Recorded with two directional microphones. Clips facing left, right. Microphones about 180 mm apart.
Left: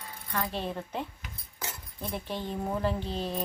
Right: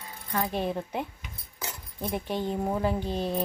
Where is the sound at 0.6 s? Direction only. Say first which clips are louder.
Right 4 dB; 15° right (ahead or behind).